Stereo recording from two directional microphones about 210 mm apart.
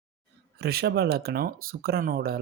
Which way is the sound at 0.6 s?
50° right (ahead or behind).